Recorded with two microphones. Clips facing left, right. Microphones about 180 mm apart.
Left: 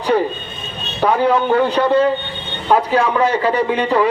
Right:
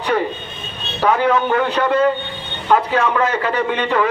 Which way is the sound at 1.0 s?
30° left (ahead or behind).